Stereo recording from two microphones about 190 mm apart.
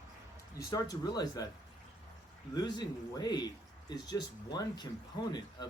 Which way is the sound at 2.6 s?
20° left (ahead or behind).